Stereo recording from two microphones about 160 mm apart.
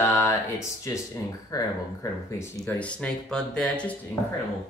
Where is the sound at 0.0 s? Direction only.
15° left (ahead or behind).